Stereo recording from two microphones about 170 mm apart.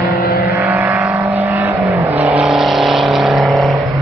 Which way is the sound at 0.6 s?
10° right (ahead or behind).